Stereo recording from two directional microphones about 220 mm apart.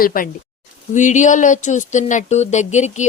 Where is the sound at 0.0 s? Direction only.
40° left (ahead or behind).